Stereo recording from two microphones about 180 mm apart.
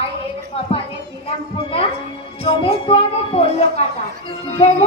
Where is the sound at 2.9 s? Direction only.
30° left (ahead or behind).